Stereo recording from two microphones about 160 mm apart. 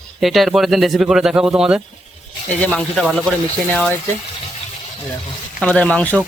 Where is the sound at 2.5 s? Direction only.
10° left (ahead or behind).